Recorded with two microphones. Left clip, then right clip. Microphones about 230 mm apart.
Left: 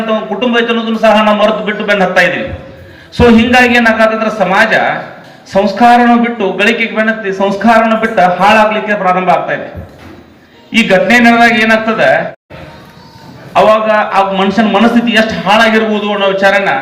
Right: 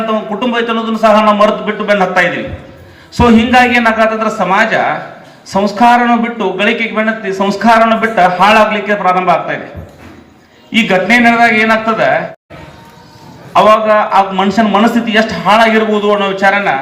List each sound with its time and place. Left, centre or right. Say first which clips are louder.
0.3 s a man's voice: left 3 dB; right
10.7 s a man's voice: left 2 dB; right
13.5 s a man's voice: even; right